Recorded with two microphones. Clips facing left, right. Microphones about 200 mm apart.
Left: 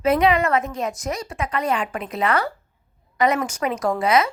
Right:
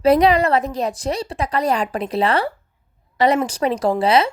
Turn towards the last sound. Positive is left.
turn(degrees=-30)  # may be behind; listen again after turning